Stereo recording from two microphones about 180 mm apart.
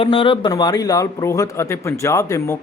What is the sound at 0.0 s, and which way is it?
A man's voice, 25° left (ahead or behind).